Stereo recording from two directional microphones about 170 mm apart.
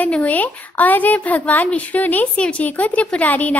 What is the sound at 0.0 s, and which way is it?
A woman's voice, 10° left (ahead or behind).